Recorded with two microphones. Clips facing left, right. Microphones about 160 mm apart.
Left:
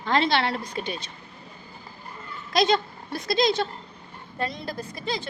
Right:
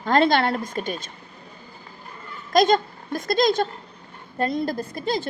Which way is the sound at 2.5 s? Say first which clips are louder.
Right 4 dB; 45° right (ahead or behind).